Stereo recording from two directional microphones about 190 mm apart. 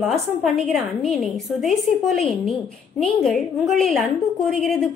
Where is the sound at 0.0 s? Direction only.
Centre (ahead or behind).